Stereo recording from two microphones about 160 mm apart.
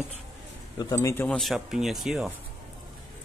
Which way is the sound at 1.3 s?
Centre (ahead or behind).